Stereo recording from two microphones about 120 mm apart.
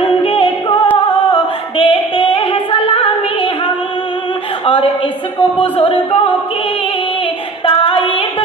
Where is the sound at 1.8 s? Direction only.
50° left (ahead or behind).